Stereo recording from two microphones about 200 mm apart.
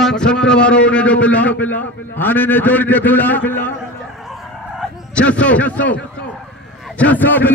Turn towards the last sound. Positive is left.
turn(degrees=10)  # may be behind; listen again after turning